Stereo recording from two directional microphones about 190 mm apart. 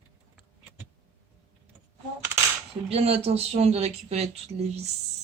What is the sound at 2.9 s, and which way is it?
Speech, 30° right (ahead or behind).